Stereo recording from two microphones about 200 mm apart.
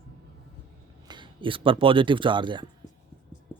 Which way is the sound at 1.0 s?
25° right (ahead or behind).